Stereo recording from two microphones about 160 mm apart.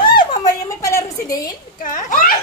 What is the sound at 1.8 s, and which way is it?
Speech, 55° left (ahead or behind).